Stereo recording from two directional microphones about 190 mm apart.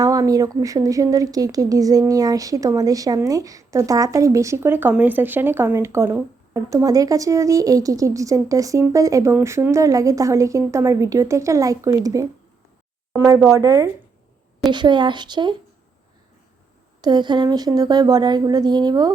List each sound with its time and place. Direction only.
0.0 s a woman's voice: 20° right (ahead or behind)
17.0 s speech: 25° right (ahead or behind)